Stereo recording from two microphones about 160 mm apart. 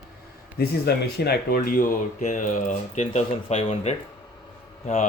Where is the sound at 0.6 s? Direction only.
80° left.